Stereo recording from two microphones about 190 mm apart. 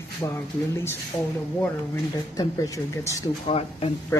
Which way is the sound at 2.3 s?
20° left (ahead or behind).